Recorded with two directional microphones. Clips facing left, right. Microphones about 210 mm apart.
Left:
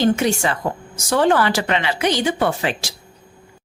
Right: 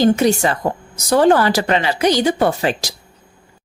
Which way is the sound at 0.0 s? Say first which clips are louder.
Right 4 dB; 40° right (ahead or behind).